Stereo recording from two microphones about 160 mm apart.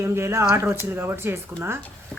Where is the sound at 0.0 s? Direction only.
15° right (ahead or behind).